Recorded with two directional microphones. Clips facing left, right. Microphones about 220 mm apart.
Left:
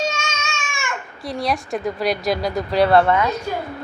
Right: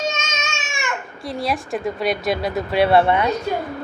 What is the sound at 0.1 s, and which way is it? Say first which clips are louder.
Baby cry: even; 20° right (ahead or behind).